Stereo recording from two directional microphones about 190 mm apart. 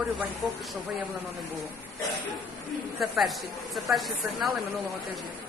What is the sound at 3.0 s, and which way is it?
Speech, centre (ahead or behind).